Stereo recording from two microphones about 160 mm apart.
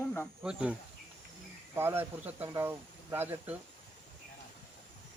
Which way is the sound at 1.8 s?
15° right (ahead or behind).